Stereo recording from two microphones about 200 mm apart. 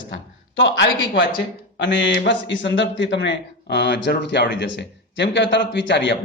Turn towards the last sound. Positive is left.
turn(degrees=60)  # may be behind; listen again after turning